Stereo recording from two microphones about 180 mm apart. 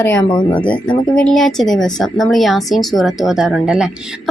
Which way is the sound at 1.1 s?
5° left (ahead or behind).